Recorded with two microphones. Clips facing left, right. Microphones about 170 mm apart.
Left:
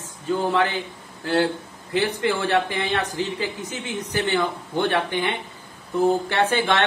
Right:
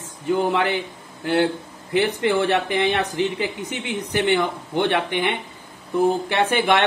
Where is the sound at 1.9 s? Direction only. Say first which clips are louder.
Right 3 dB; 20° right (ahead or behind).